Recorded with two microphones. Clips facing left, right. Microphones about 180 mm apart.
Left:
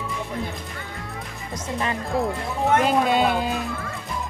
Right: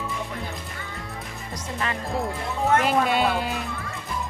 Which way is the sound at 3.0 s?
20° left (ahead or behind).